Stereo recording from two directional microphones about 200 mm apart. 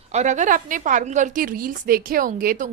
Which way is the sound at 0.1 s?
35° right (ahead or behind).